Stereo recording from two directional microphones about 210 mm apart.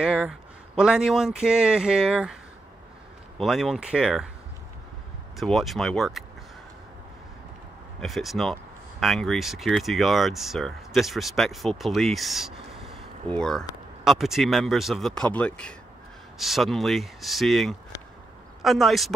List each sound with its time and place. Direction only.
0.0 s speech: 5° right (ahead or behind)
3.3 s speech: centre (ahead or behind)
5.4 s speech: centre (ahead or behind)
8.0 s speech: centre (ahead or behind)